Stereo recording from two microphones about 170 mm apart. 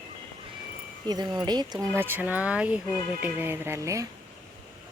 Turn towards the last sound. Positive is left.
turn(degrees=-20)  # may be behind; listen again after turning